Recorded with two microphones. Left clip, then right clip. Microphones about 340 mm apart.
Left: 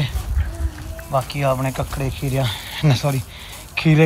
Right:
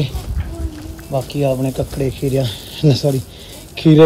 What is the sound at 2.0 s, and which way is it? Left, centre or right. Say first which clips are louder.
Speech: right 7 dB; centre.